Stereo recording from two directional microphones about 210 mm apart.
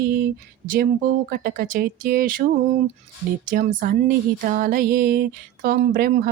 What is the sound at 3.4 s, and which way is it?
Speech, 40° right (ahead or behind).